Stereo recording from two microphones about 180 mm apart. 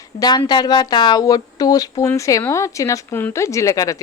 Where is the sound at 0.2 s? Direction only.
25° left (ahead or behind).